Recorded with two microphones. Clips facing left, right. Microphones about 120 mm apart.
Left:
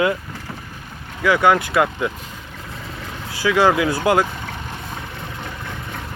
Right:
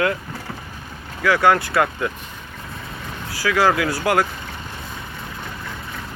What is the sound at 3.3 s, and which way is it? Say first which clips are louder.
Speech: left 2 dB; 20° left (ahead or behind).